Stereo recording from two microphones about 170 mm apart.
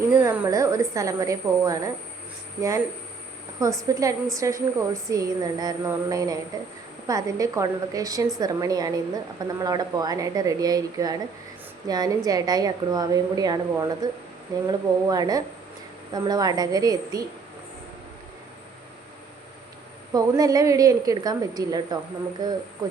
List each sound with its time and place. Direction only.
0.1 s a woman's voice: 15° right (ahead or behind)
20.1 s a woman's voice: 20° right (ahead or behind)